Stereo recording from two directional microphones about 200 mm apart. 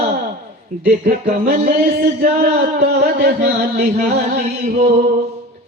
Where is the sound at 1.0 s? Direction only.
45° right (ahead or behind).